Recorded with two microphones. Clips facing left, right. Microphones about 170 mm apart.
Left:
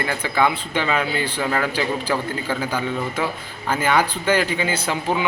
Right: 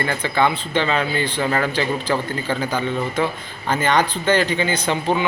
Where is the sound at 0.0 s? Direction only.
5° left (ahead or behind).